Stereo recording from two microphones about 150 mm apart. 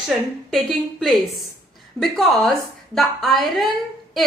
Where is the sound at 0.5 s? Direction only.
Centre (ahead or behind).